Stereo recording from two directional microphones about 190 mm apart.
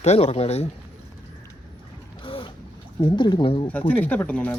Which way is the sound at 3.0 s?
25° left (ahead or behind).